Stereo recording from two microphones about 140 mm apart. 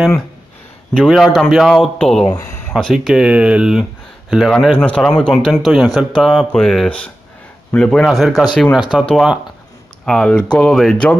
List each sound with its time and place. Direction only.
0.9 s a man's voice: centre (ahead or behind)
2.3 s a sound: 20° left (ahead or behind)
2.7 s a man's voice: centre (ahead or behind)